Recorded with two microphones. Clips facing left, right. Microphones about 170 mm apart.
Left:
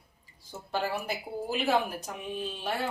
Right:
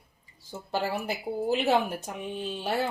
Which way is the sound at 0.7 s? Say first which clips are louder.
Right 2 dB; 30° right (ahead or behind).